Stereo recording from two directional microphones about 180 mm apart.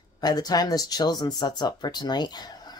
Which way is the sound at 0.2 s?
20° left (ahead or behind).